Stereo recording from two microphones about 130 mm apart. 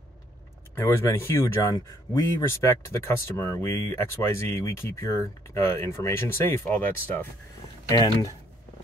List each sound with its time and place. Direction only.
0.7 s speech: 20° left (ahead or behind)
7.9 s speech: 30° left (ahead or behind)